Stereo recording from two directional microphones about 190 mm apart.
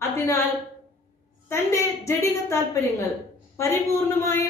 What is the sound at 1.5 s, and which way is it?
A woman's voice, 15° left (ahead or behind).